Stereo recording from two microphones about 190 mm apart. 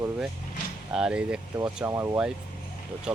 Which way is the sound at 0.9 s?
5° right (ahead or behind).